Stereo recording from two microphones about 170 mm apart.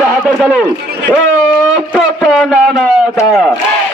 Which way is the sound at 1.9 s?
Centre (ahead or behind).